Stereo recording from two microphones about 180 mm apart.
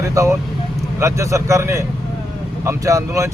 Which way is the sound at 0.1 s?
15° right (ahead or behind).